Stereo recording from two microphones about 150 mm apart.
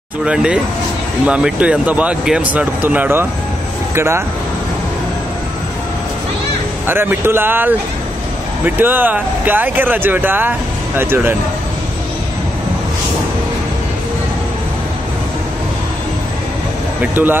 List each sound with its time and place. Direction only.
0.2 s speech: 5° right (ahead or behind)
6.9 s speech: 15° right (ahead or behind)
17.0 s speech: 15° right (ahead or behind)